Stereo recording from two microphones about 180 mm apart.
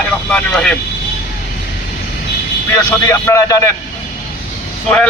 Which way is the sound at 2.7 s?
15° left (ahead or behind).